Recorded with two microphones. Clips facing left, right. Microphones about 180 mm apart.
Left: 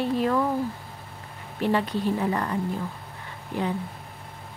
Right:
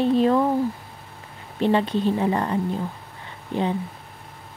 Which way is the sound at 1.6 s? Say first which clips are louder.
Right 4 dB; 25° right (ahead or behind).